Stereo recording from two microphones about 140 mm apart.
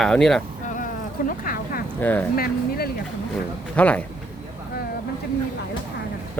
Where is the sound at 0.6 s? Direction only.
65° left (ahead or behind).